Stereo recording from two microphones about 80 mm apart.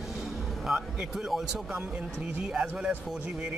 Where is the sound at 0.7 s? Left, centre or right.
Centre.